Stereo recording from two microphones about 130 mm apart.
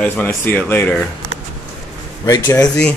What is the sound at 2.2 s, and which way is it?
Speech, 25° left (ahead or behind).